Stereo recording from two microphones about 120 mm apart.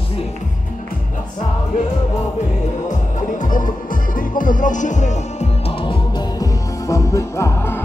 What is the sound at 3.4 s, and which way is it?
Music, 90° left.